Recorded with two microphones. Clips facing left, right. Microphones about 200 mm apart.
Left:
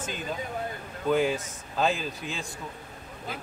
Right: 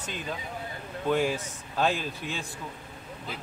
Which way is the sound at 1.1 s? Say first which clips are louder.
Left 2 dB; centre (ahead or behind).